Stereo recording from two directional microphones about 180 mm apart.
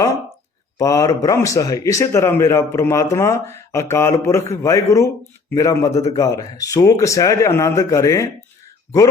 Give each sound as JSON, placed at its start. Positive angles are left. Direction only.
{"t": 0.8, "sound": "a man's voice", "side_deg": 20}